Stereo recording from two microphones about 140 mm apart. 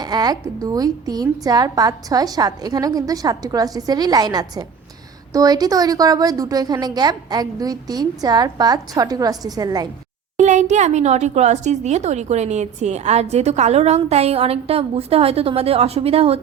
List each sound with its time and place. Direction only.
0.0 s a woman's voice: 30° right (ahead or behind)
10.3 s speech: 60° right (ahead or behind)